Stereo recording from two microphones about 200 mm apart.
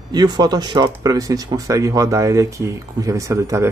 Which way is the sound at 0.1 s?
20° right (ahead or behind).